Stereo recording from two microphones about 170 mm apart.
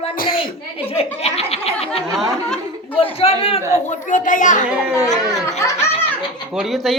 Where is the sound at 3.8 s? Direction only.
50° left (ahead or behind).